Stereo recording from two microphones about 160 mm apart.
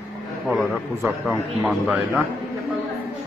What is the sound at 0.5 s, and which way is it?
A man's voice, centre (ahead or behind).